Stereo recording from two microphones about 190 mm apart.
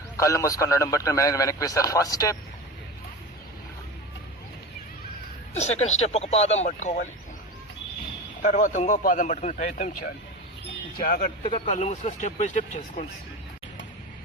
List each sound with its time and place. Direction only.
0.2 s a man's voice: 15° left (ahead or behind)
5.5 s a man's voice: 35° left (ahead or behind)
8.4 s a man's voice: 40° left (ahead or behind)
11.4 s speech: 25° left (ahead or behind)
11.7 s a man's voice: 35° left (ahead or behind)